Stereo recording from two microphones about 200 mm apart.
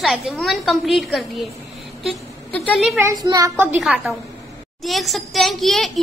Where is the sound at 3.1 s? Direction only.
20° right (ahead or behind).